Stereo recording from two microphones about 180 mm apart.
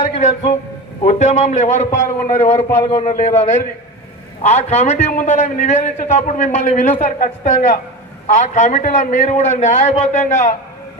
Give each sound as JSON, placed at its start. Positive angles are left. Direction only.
{"t": 0.1, "sound": "a man's voice", "side_deg": 35}
{"t": 2.8, "sound": "a man's voice", "side_deg": 30}
{"t": 3.1, "sound": "a man's voice", "side_deg": 40}